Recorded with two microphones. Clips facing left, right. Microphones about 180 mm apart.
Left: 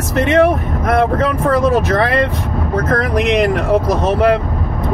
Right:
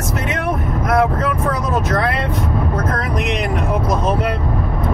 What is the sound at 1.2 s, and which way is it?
Speech, 80° left.